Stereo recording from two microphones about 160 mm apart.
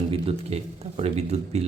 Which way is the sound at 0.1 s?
40° right (ahead or behind).